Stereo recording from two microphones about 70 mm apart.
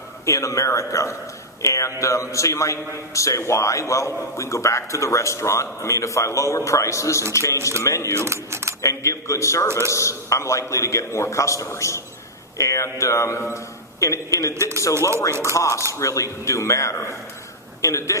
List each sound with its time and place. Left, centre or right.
0.3 s a man's voice: left
8.1 s speech: right
8.8 s a man's voice: left
15.3 s a man's voice: right
15.5 s a man's voice: left